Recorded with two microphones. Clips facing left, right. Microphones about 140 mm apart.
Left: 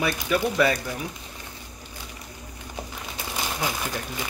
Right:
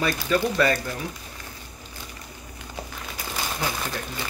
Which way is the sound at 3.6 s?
10° left (ahead or behind).